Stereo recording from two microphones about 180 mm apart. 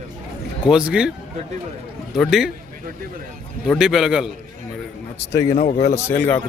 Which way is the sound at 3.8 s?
5° right (ahead or behind).